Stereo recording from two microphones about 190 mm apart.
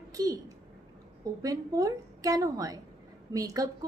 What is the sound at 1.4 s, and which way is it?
Speech, 20° right (ahead or behind).